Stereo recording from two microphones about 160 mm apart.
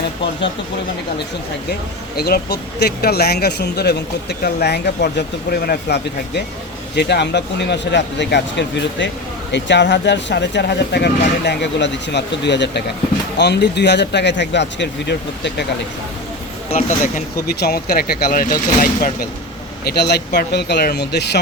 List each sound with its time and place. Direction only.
2.1 s speech: 75° left (ahead or behind)
16.7 s speech: 50° left (ahead or behind)
17.5 s speech: 80° left; by 19.3 s 55° left (ahead or behind)
19.8 s speech: 85° left